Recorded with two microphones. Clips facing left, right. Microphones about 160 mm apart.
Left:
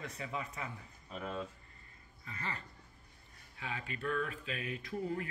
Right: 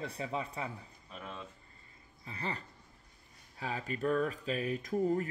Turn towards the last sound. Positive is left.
turn(degrees=-45)  # may be behind; listen again after turning